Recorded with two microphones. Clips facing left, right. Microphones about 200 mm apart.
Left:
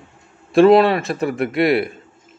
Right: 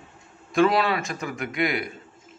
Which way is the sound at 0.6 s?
55° left (ahead or behind).